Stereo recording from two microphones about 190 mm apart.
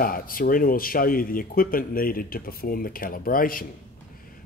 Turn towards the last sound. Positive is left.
turn(degrees=50)  # may be behind; listen again after turning